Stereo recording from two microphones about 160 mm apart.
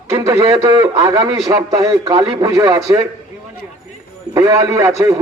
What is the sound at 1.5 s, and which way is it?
A man's voice, 25° right (ahead or behind).